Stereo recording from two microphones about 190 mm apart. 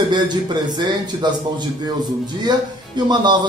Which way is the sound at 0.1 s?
25° right (ahead or behind).